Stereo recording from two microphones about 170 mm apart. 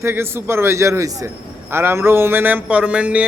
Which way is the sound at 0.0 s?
15° right (ahead or behind).